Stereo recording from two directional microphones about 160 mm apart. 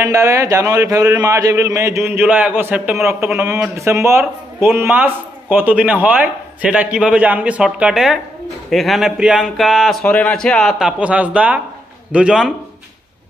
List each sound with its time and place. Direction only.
0.0 s speech: 15° right (ahead or behind)